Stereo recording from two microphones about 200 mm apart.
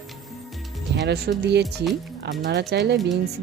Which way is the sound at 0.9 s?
60° right (ahead or behind).